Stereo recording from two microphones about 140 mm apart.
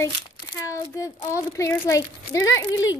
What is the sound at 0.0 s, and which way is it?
Speech, 20° left (ahead or behind).